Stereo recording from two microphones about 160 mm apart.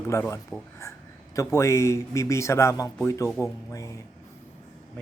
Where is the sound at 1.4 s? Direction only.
15° left (ahead or behind).